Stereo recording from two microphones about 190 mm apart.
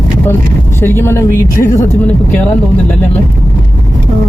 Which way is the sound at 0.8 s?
10° left (ahead or behind).